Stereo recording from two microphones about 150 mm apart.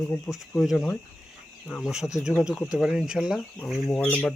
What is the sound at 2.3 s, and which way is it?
Speech, 15° left (ahead or behind).